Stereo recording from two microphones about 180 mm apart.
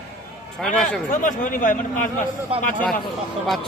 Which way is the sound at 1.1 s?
45° left (ahead or behind).